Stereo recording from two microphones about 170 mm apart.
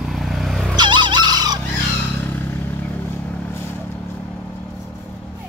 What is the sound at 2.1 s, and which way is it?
Vehicle, 10° left (ahead or behind).